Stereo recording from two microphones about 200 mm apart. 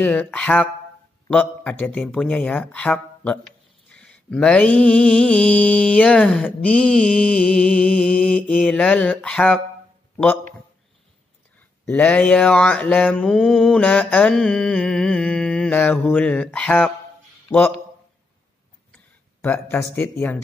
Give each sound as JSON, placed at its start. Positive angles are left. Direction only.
{"t": 0.0, "sound": "mantra", "side_deg": 5}
{"t": 1.3, "sound": "speech", "side_deg": 5}
{"t": 3.9, "sound": "mantra", "side_deg": 5}
{"t": 10.1, "sound": "a man's voice", "side_deg": 10}
{"t": 11.8, "sound": "mantra", "side_deg": 5}
{"t": 19.4, "sound": "speech", "side_deg": 10}